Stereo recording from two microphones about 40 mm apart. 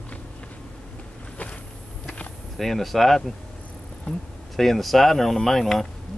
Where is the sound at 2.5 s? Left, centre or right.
Centre.